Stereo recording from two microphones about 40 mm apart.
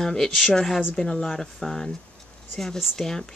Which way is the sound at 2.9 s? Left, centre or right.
Centre.